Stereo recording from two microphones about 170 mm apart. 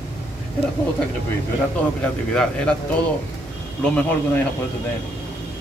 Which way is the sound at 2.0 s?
5° left (ahead or behind).